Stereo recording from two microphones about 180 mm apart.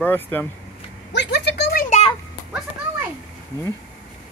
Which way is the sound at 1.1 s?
70° left (ahead or behind).